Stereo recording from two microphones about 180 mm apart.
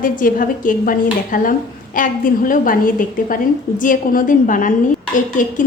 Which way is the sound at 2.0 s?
50° left (ahead or behind).